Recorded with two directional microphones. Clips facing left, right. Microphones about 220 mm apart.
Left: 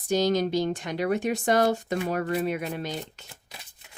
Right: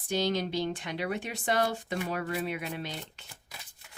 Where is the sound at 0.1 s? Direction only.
45° left (ahead or behind).